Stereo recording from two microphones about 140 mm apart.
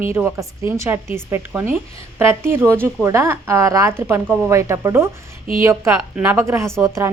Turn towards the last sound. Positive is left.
turn(degrees=-20)  # may be behind; listen again after turning